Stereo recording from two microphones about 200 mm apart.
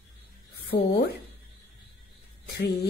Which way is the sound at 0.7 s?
55° left (ahead or behind).